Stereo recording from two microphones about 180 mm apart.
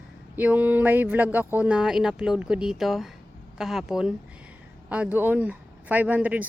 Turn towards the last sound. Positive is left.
turn(degrees=-10)  # may be behind; listen again after turning